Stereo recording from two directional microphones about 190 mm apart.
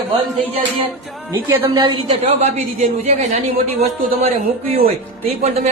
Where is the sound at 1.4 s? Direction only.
20° right (ahead or behind).